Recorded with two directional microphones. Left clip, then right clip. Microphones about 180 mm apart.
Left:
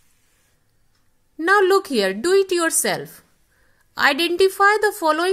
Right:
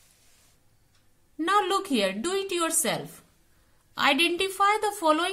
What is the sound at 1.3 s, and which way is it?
A woman's voice, 40° left (ahead or behind).